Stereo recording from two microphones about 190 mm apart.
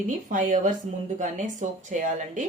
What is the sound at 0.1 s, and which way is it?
Speech, 45° right (ahead or behind).